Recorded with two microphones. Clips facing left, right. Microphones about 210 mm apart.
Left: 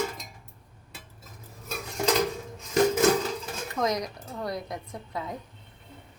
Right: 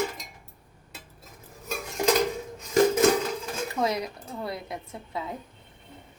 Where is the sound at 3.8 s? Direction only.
30° right (ahead or behind).